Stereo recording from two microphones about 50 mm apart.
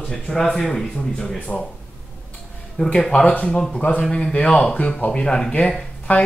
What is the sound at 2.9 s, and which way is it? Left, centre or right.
Speech, left.